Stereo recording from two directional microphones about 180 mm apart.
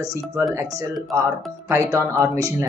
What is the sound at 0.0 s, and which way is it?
Speech, 15° right (ahead or behind).